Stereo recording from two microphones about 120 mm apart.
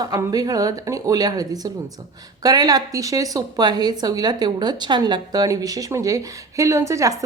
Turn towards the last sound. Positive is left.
turn(degrees=-25)  # may be behind; listen again after turning